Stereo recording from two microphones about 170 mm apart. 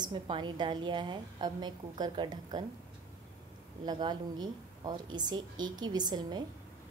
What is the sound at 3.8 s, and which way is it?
A woman's voice, 25° right (ahead or behind).